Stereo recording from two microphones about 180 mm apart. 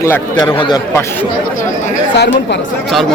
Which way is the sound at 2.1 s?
75° left (ahead or behind).